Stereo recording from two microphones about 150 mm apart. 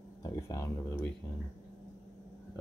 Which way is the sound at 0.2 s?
20° left (ahead or behind).